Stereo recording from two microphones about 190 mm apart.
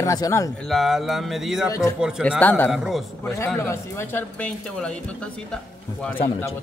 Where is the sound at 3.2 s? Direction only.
10° left (ahead or behind).